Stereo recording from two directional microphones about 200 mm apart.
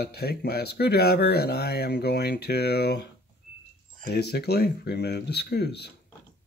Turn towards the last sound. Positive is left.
turn(degrees=55)  # may be behind; listen again after turning